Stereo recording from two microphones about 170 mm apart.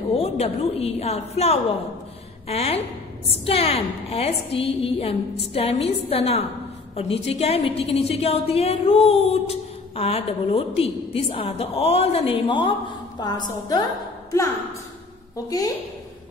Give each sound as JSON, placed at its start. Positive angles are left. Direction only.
{"t": 0.2, "sound": "a woman's voice", "side_deg": 35}
{"t": 15.3, "sound": "a woman's voice", "side_deg": 20}